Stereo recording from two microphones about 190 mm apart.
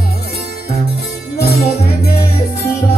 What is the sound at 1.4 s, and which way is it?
Music, 55° left (ahead or behind).